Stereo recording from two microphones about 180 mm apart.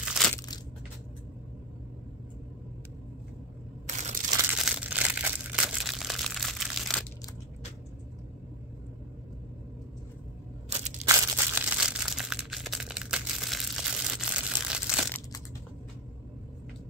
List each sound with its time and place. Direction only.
0.0 s crushing: centre (ahead or behind)
3.8 s crushing: 40° right (ahead or behind)
4.6 s crumpling: 5° right (ahead or behind)
11.1 s crumpling: 10° right (ahead or behind)